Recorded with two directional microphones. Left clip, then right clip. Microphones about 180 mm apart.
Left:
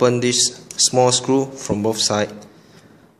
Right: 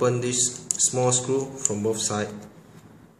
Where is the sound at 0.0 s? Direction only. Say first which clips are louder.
Left 7 dB; 50° left (ahead or behind).